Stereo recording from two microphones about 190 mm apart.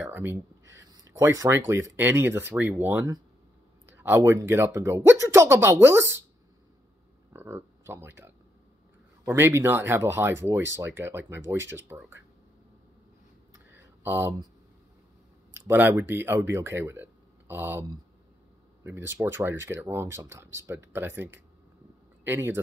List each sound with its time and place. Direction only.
0.0 s a sound: 10° right (ahead or behind)
1.4 s speech: 15° right (ahead or behind)
7.3 s speech: 10° right (ahead or behind)
13.7 s a sound: 10° right (ahead or behind)
15.5 s speech: 10° right (ahead or behind)
18.9 s speech: 10° right (ahead or behind)